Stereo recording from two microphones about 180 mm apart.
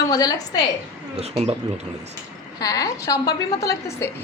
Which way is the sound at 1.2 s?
35° right (ahead or behind).